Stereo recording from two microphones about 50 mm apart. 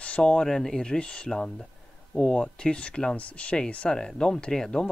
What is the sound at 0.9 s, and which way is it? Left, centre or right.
A man's voice, left.